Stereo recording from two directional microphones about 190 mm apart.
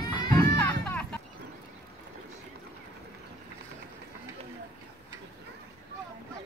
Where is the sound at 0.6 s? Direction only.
10° left (ahead or behind).